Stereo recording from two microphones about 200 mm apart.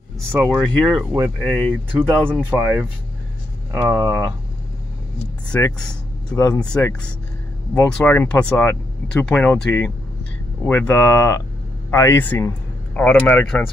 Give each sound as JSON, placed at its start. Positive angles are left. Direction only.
{"t": 0.3, "sound": "speech", "side_deg": -10}
{"t": 1.4, "sound": "speech", "side_deg": 5}
{"t": 2.5, "sound": "speech", "side_deg": -10}
{"t": 3.7, "sound": "speech", "side_deg": -15}
{"t": 5.5, "sound": "speech", "side_deg": 5}